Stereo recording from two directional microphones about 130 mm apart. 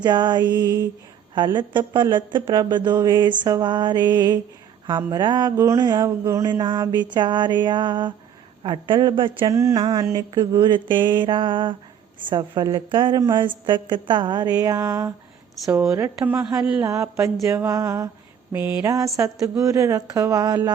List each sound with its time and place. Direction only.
0.0 s mantra: 35° right (ahead or behind)
6.5 s mantra: 35° right (ahead or behind)
9.5 s speech: 25° right (ahead or behind)
9.7 s mantra: 40° right (ahead or behind)
15.8 s speech: 25° right (ahead or behind)
16.2 s speech: 10° right (ahead or behind)
16.8 s speech: 25° right (ahead or behind)
18.5 s speech: 15° right (ahead or behind)